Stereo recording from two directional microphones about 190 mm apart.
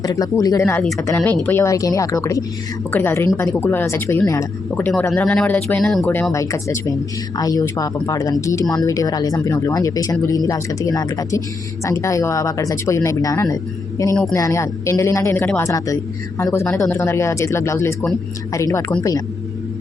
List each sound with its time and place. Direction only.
0.0 s speech: 20° left (ahead or behind)